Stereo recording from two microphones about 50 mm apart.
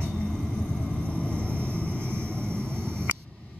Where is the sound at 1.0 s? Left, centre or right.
Left.